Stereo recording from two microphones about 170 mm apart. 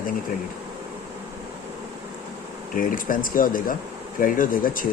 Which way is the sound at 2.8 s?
55° left (ahead or behind).